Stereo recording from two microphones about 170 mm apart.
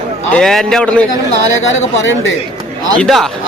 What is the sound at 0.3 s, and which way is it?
Speech, 5° left (ahead or behind).